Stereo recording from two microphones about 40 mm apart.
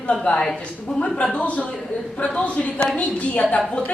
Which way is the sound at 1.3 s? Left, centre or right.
Left.